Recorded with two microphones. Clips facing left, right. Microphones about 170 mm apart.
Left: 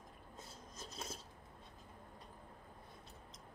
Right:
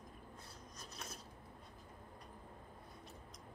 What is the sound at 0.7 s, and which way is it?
Filing, 25° left (ahead or behind).